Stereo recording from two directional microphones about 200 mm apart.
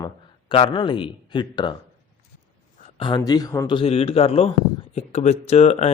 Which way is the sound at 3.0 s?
25° left (ahead or behind).